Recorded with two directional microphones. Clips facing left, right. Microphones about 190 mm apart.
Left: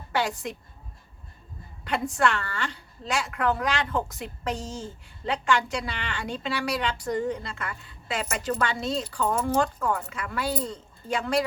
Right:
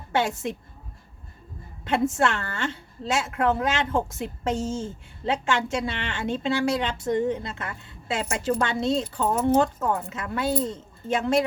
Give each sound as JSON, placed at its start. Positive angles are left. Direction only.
{"t": 0.1, "sound": "a woman's voice", "side_deg": -25}
{"t": 1.8, "sound": "a woman's voice", "side_deg": -25}